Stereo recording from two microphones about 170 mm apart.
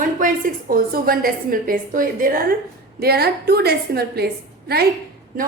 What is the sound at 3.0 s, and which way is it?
A woman's voice, 65° right (ahead or behind).